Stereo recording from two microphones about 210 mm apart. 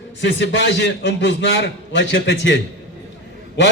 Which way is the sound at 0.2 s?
60° left (ahead or behind).